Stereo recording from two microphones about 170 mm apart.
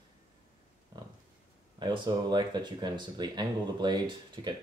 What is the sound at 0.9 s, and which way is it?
Pig, 25° right (ahead or behind).